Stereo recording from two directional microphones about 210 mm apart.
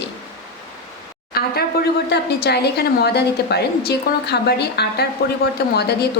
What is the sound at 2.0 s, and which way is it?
A woman's voice, 50° left (ahead or behind).